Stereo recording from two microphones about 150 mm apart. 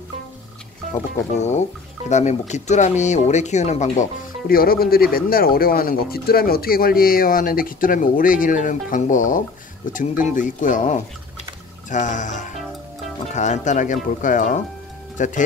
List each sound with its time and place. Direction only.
1.3 s speech: 50° left (ahead or behind)
4.5 s speech: 80° left; by 15.4 s 55° left (ahead or behind)